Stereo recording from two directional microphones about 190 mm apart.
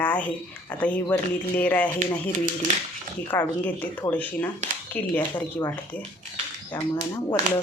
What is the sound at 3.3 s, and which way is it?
Speech, 10° left (ahead or behind).